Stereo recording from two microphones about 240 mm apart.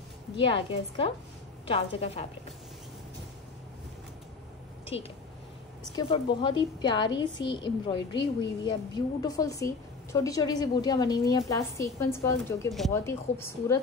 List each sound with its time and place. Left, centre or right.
0.4 s a woman's voice: left
4.9 s a woman's voice: left